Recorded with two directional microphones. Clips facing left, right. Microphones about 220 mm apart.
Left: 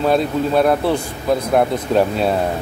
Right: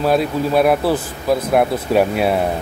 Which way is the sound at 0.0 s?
5° right (ahead or behind).